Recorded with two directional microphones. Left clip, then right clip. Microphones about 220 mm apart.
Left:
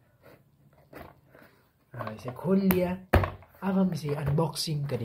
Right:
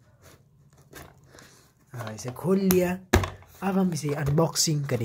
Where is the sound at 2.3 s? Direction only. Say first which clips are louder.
Right 4 dB; 55° right (ahead or behind).